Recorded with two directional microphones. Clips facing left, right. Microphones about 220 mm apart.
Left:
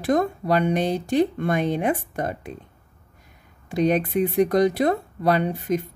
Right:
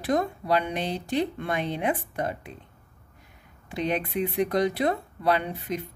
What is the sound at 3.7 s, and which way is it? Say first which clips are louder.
Speech: left 7 dB; 45° left (ahead or behind).